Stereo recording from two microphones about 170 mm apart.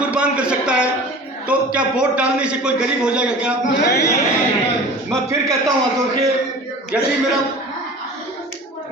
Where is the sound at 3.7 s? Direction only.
75° left (ahead or behind).